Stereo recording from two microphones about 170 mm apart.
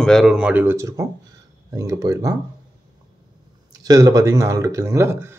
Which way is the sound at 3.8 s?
20° right (ahead or behind).